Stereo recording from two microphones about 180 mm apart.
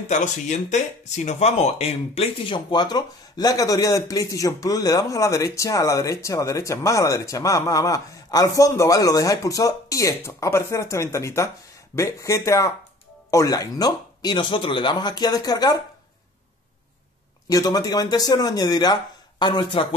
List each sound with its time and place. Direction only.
0.1 s speech: 40° left (ahead or behind); by 15.8 s 20° left (ahead or behind)
17.5 s speech: 20° left (ahead or behind)